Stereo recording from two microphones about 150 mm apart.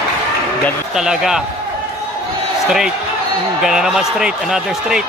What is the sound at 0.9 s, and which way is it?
Speech, 5° right (ahead or behind).